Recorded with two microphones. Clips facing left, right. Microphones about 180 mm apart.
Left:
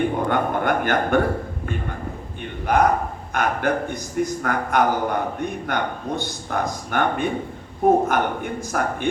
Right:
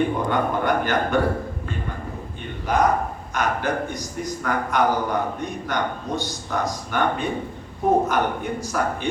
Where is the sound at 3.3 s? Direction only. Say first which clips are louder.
Left 2 dB; 55° left (ahead or behind).